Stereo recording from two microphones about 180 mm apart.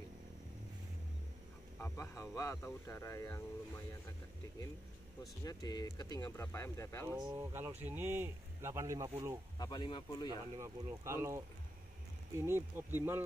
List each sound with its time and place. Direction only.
1.8 s speech: 15° left (ahead or behind)
5.4 s speech: 20° left (ahead or behind)
7.3 s speech: 15° right (ahead or behind)
9.6 s speech: 25° left (ahead or behind)
10.6 s speech: 15° right (ahead or behind)